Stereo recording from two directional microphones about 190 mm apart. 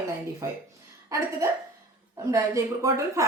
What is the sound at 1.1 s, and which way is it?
A woman's voice, 15° right (ahead or behind).